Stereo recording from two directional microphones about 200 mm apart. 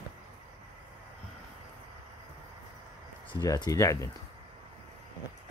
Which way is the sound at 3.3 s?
20° left (ahead or behind).